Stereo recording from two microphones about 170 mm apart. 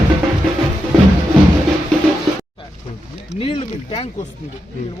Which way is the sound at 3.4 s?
35° left (ahead or behind).